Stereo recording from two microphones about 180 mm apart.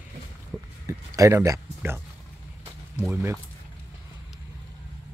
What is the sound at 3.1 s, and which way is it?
Speech, 15° right (ahead or behind).